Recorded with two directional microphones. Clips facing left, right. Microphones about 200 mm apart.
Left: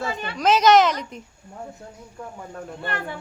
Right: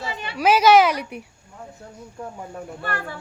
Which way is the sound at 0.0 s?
50° left (ahead or behind).